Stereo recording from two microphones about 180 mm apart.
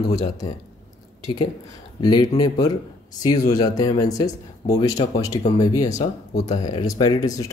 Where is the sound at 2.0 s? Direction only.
25° left (ahead or behind).